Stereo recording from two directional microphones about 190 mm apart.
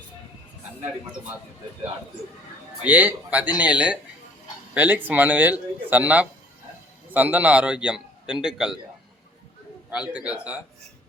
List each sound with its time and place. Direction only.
2.8 s a man's voice: 10° right (ahead or behind)
9.9 s a man's voice: 5° right (ahead or behind)